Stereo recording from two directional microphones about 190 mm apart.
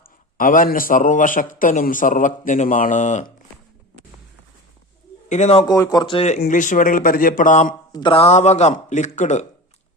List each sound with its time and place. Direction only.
0.3 s a man's voice: 45° left (ahead or behind)
5.3 s speech: 35° left (ahead or behind)
5.6 s a man's voice: 20° left (ahead or behind); by 7.8 s 40° left (ahead or behind)
7.9 s speech: 25° left (ahead or behind)